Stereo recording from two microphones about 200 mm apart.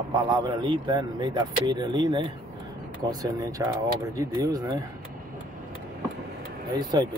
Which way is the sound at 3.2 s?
15° right (ahead or behind).